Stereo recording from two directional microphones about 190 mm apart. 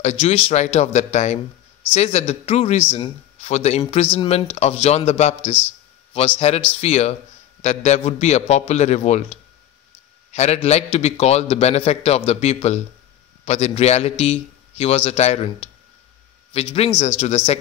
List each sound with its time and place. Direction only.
0.0 s a man's voice: 35° left (ahead or behind)